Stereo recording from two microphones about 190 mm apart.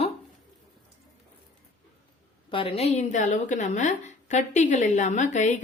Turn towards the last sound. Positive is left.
turn(degrees=40)  # may be behind; listen again after turning